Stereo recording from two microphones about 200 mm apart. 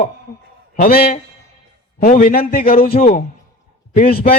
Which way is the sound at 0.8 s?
45° left (ahead or behind).